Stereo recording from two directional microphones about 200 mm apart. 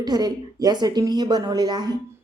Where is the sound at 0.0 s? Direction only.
20° right (ahead or behind).